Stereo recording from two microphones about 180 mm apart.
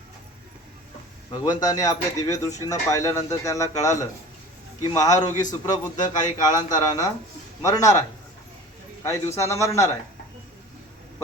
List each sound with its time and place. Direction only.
1.3 s speech: 25° left (ahead or behind)
9.0 s a man's voice: 15° left (ahead or behind)